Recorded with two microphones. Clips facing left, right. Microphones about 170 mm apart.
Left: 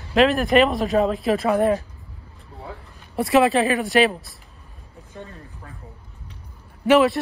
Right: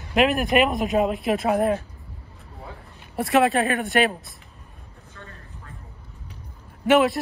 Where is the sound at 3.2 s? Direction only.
Centre (ahead or behind).